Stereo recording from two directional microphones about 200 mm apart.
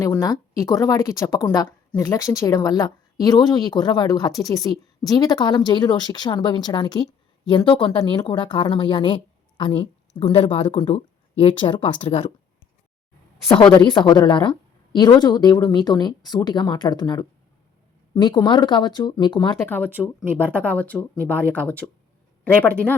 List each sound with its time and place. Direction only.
0.0 s speech: 15° left (ahead or behind)
13.7 s speech: 20° left (ahead or behind)
19.5 s speech: 10° left (ahead or behind)
19.9 s speech: 10° right (ahead or behind)
20.4 s speech: 10° left (ahead or behind)